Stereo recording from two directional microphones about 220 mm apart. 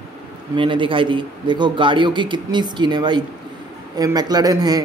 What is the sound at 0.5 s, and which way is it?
A man's voice, 20° right (ahead or behind).